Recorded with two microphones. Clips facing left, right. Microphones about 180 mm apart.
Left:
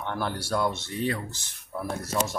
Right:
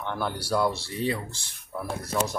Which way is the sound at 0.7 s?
20° left (ahead or behind).